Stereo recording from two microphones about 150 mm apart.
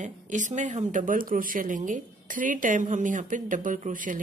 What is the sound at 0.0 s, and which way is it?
Speech, 55° right (ahead or behind).